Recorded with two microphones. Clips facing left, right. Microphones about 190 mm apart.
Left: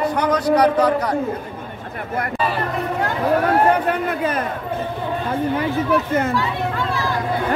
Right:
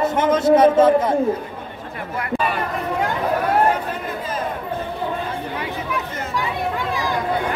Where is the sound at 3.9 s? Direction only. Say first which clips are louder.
Left 6 dB; 65° left (ahead or behind).